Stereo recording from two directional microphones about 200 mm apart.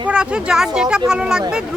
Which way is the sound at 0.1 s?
5° right (ahead or behind).